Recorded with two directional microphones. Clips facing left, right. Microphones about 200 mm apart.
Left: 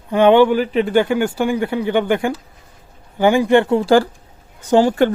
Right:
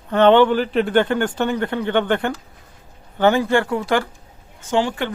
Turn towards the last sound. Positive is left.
turn(degrees=40)  # may be behind; listen again after turning